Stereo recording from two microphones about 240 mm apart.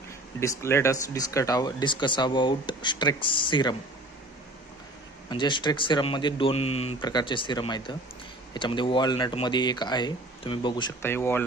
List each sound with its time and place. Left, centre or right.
0.3 s speech: centre
5.3 s speech: centre